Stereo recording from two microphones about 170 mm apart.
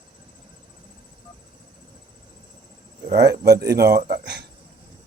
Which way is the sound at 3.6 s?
70° right (ahead or behind).